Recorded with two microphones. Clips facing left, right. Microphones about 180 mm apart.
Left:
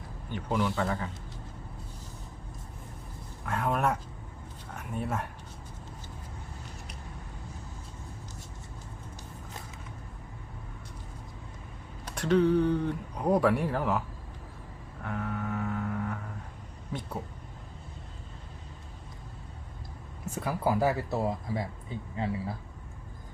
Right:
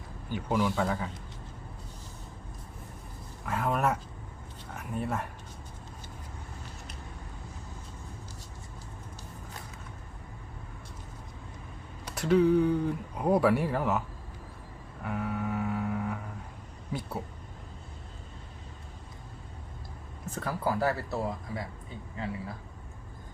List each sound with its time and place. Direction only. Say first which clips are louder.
0.3 s speech: right 1 dB; 5° right (ahead or behind)
3.4 s speech: even; centre (ahead or behind)
12.0 s speech: right 1 dB; 5° right (ahead or behind)
15.0 s music: right 2 dB; 5° right (ahead or behind)
16.9 s speech: right 1 dB; 5° right (ahead or behind)
20.3 s speech: left 2 dB; 15° left (ahead or behind)